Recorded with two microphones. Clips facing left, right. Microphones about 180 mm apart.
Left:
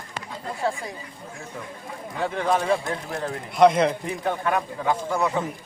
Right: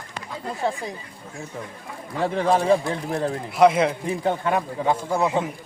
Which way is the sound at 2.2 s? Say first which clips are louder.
Right 3 dB; 30° right (ahead or behind).